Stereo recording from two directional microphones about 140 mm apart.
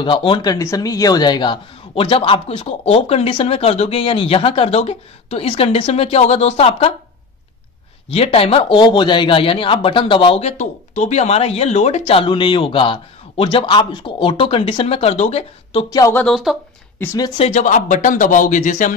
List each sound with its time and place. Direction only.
0.0 s speech: 35° left (ahead or behind)
8.1 s speech: 45° left (ahead or behind)
12.1 s speech: 40° left (ahead or behind)
16.3 s speech: centre (ahead or behind)
17.0 s speech: 20° left (ahead or behind)
17.4 s speech: 55° left (ahead or behind)